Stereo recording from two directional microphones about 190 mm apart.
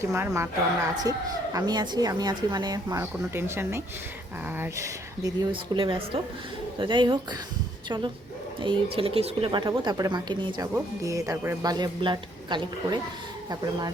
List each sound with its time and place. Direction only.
0.0 s a woman's voice: 15° right (ahead or behind)